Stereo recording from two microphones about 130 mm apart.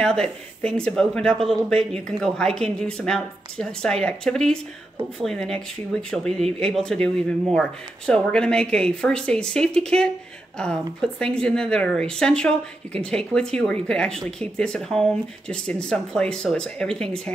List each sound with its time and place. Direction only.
0.0 s speech: 5° left (ahead or behind)